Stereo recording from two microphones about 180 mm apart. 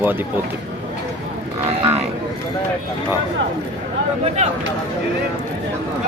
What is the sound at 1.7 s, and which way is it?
Cattle, 35° right (ahead or behind).